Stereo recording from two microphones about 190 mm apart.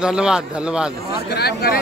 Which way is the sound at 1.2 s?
60° left (ahead or behind).